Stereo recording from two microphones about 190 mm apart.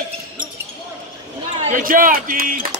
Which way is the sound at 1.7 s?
45° right (ahead or behind).